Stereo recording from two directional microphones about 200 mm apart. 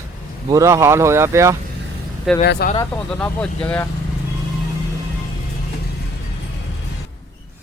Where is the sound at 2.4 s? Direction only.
50° left (ahead or behind).